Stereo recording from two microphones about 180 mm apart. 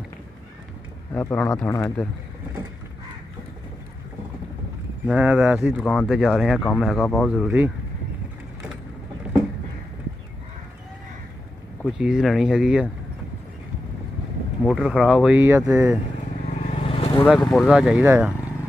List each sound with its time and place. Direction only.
1.3 s speech: 5° left (ahead or behind)
5.0 s speech: 10° right (ahead or behind)
5.9 s speech: centre (ahead or behind)
11.8 s speech: 5° right (ahead or behind)
14.6 s speech: 5° right (ahead or behind)
16.7 s vehicle: 30° left (ahead or behind)
17.2 s speech: centre (ahead or behind)